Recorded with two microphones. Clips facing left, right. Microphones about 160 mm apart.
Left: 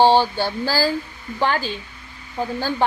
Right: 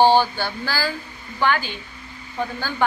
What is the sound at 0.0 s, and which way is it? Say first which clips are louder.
A woman's voice: left 1 dB; 30° left (ahead or behind).